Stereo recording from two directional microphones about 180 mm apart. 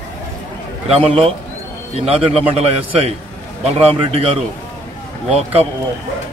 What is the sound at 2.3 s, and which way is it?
Speech, 35° right (ahead or behind).